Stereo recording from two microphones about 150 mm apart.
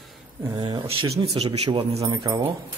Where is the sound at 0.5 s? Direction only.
30° right (ahead or behind).